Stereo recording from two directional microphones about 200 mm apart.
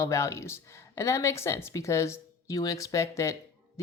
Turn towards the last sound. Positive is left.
turn(degrees=15)  # may be behind; listen again after turning